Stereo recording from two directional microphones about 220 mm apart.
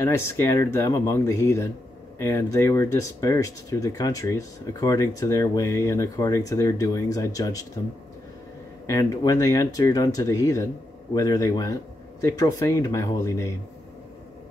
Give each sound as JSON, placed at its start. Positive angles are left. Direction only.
{"t": 0.0, "sound": "speech", "side_deg": 10}
{"t": 8.8, "sound": "speech", "side_deg": 15}